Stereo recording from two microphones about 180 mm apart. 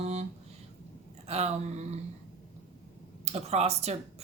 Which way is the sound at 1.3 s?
35° right (ahead or behind).